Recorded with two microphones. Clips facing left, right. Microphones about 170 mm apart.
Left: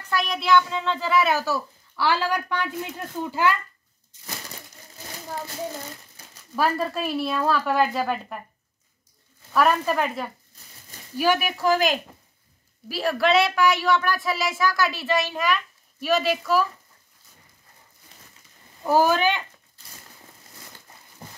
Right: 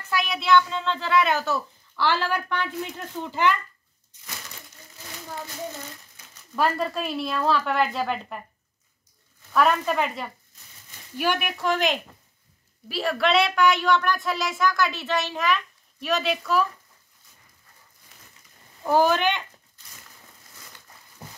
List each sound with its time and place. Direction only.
0.0 s a child's voice: centre (ahead or behind)
6.5 s a child's voice: 5° left (ahead or behind)
9.5 s a child's voice: 5° left (ahead or behind)
18.8 s speech: 5° left (ahead or behind)